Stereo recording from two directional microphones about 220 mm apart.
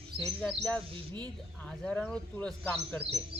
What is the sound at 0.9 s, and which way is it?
Speech, 20° right (ahead or behind).